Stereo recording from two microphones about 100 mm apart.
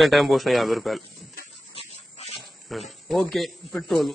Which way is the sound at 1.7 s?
90° left.